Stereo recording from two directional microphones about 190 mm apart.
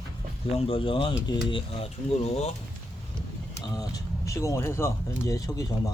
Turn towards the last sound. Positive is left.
turn(degrees=20)  # may be behind; listen again after turning